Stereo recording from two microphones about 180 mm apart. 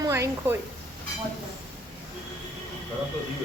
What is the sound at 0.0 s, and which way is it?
Speech, 15° right (ahead or behind).